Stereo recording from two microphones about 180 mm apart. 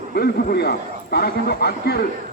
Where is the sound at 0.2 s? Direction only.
60° left (ahead or behind).